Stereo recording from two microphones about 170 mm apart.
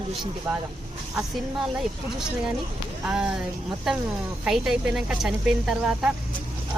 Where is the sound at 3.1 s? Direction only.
5° right (ahead or behind).